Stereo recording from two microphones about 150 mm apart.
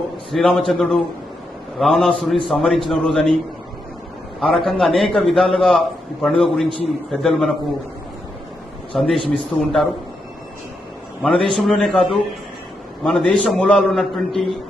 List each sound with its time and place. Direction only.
0.3 s a man's voice: centre (ahead or behind)
4.4 s a man's voice: centre (ahead or behind)
8.9 s a man's voice: centre (ahead or behind)
11.2 s a man's voice: centre (ahead or behind)